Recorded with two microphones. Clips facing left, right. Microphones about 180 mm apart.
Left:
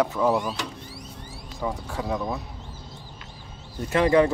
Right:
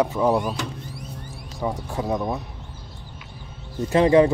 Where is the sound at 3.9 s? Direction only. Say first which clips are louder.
Right 3 dB; 25° right (ahead or behind).